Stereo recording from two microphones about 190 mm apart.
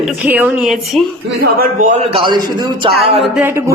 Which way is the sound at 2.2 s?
25° right (ahead or behind).